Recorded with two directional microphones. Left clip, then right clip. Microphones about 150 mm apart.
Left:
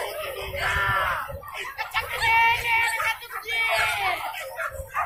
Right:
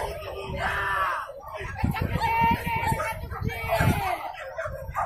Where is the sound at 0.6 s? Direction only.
65° right (ahead or behind).